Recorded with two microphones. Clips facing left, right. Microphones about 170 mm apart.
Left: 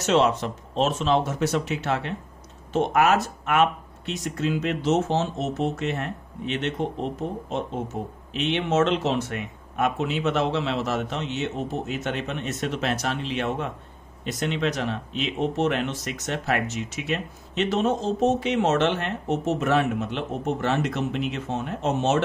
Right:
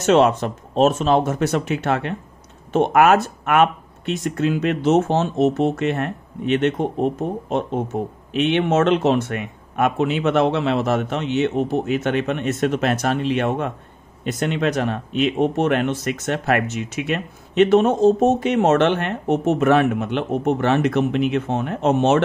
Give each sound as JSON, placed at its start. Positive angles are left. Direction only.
{"t": 0.0, "sound": "speech", "side_deg": -55}